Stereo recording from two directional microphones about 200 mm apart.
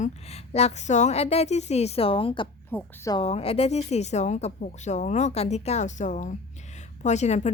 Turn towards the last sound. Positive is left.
turn(degrees=35)  # may be behind; listen again after turning